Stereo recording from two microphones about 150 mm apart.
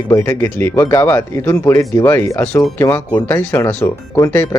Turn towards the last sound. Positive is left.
turn(degrees=15)  # may be behind; listen again after turning